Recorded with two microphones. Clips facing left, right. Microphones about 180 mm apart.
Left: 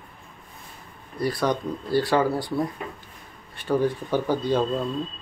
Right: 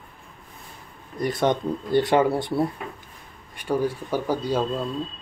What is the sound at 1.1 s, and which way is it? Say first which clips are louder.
Speech: right 2 dB; 20° right (ahead or behind).